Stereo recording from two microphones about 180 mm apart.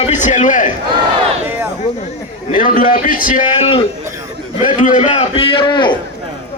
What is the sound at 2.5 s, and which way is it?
Speech, 50° left (ahead or behind).